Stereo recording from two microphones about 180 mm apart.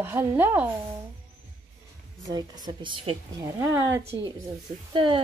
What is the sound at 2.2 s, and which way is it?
A woman's voice, 20° right (ahead or behind).